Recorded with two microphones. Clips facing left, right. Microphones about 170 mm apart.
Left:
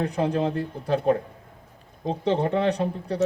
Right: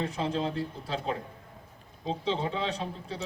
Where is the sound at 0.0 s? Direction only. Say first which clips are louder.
Left 6 dB; 60° left (ahead or behind).